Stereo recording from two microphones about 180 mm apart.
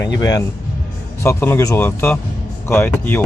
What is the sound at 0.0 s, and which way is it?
Speech, 20° left (ahead or behind).